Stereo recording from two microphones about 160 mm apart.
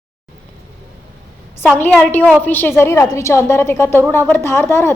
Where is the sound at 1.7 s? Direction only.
10° left (ahead or behind).